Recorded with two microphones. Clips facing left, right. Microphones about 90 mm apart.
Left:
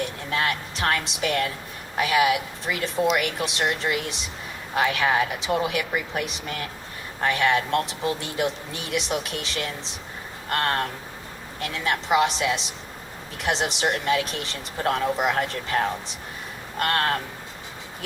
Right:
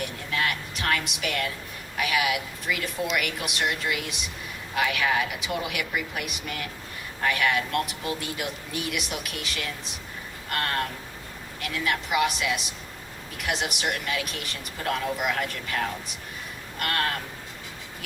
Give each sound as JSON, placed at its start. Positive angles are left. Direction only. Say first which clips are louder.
{"t": 0.3, "sound": "speech", "louder": "left 2 dB", "side_deg": 30}